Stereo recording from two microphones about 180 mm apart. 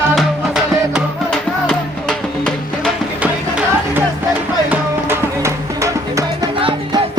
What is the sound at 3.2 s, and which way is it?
Music, 10° right (ahead or behind).